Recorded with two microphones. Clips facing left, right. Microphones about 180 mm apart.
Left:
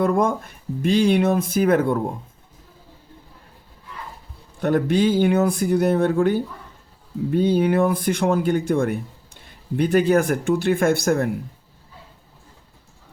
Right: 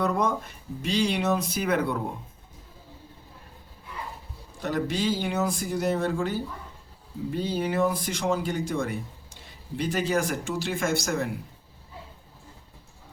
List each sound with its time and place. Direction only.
0.0 s speech: 50° left (ahead or behind)
4.6 s speech: 55° left (ahead or behind)